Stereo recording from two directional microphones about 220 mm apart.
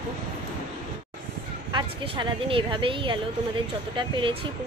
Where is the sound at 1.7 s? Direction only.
20° right (ahead or behind).